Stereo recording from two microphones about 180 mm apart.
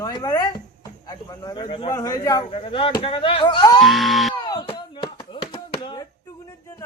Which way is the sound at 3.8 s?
Centre (ahead or behind).